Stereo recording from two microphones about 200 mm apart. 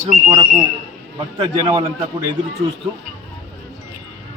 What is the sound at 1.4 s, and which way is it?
Speech, 25° right (ahead or behind).